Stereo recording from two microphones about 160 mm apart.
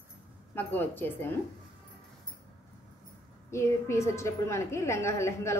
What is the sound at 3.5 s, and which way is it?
A woman's voice, 15° left (ahead or behind).